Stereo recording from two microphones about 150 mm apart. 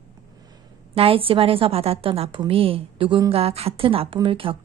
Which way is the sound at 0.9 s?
40° right (ahead or behind).